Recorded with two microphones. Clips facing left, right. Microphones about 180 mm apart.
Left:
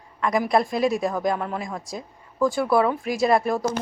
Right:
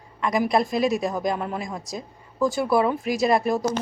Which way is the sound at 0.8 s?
30° left (ahead or behind).